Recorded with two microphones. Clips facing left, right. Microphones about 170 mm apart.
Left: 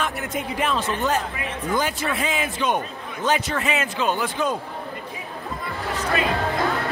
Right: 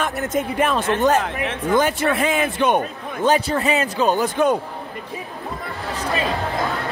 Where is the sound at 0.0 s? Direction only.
45° right (ahead or behind).